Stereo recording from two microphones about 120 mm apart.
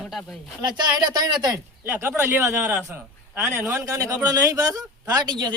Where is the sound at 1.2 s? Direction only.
35° right (ahead or behind).